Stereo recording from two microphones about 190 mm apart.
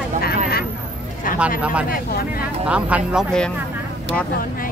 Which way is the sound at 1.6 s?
5° right (ahead or behind).